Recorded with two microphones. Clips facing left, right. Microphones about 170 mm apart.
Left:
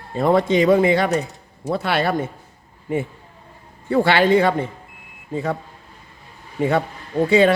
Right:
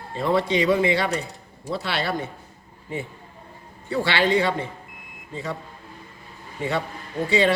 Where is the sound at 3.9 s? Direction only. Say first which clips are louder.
Left 6 dB; 50° left (ahead or behind).